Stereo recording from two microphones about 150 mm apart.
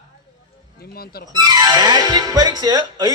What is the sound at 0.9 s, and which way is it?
Speech, 90° left.